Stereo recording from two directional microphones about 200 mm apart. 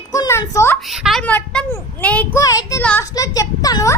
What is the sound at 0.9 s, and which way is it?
A child's voice, centre (ahead or behind).